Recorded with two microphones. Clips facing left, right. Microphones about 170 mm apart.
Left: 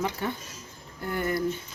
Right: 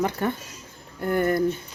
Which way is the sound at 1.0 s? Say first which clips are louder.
Right 7 dB; 50° right (ahead or behind).